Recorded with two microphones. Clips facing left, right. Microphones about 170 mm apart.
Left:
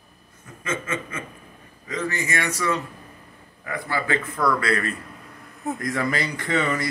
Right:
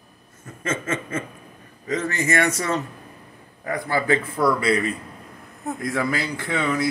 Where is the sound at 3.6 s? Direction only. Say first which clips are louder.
Right 5 dB; 40° right (ahead or behind).